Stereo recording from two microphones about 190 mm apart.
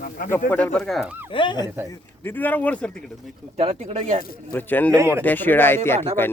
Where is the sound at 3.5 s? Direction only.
35° right (ahead or behind).